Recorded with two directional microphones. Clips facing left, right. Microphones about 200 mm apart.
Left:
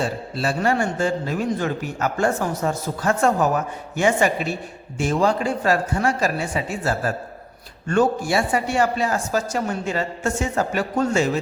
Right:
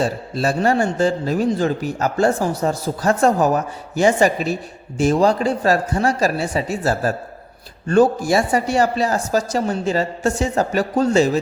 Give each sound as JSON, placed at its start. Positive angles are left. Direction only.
{"t": 0.0, "sound": "a man's voice", "side_deg": -40}